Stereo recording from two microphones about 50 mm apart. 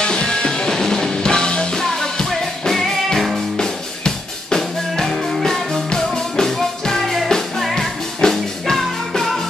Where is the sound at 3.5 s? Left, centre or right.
Centre.